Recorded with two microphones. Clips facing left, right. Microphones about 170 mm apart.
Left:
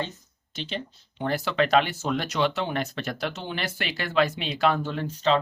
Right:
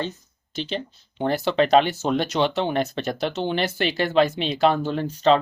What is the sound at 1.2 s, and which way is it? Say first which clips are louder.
Speech: right 4 dB; 25° right (ahead or behind).